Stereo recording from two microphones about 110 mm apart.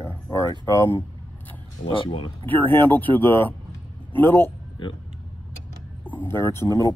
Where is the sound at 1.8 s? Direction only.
50° left (ahead or behind).